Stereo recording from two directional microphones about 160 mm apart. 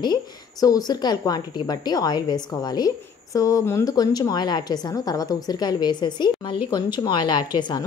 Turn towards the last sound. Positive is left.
turn(degrees=25)  # may be behind; listen again after turning